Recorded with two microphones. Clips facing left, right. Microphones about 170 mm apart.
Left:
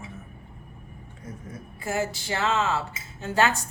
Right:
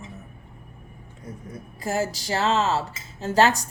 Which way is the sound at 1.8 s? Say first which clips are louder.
Right 2 dB; 40° right (ahead or behind).